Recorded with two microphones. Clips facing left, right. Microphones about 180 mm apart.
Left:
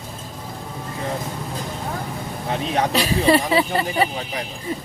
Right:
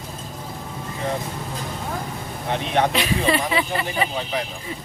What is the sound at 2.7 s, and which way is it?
Speech, 40° left (ahead or behind).